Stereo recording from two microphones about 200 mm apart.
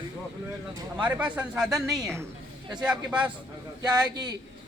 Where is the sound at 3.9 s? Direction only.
20° right (ahead or behind).